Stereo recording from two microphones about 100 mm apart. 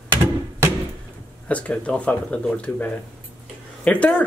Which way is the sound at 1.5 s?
15° left (ahead or behind).